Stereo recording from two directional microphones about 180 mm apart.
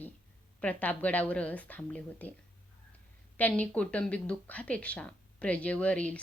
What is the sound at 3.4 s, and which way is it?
Speech, 10° left (ahead or behind).